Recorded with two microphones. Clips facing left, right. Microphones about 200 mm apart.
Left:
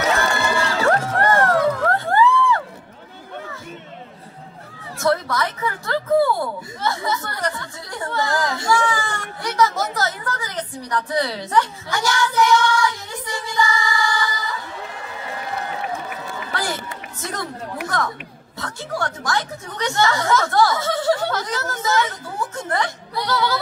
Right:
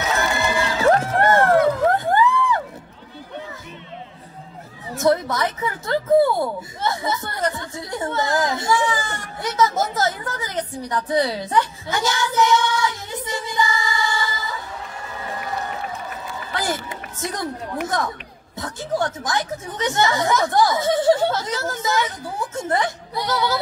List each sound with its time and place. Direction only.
0.4 s crowd: 20° right (ahead or behind)
1.2 s a sound: 20° right (ahead or behind)
4.9 s speech: 20° right (ahead or behind)
16.5 s run: 20° right (ahead or behind)
18.6 s speech: 20° right (ahead or behind)